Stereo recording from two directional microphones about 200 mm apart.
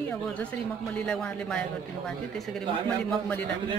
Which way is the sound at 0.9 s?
5° left (ahead or behind).